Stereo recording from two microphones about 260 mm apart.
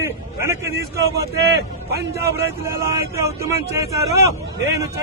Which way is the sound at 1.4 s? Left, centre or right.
Right.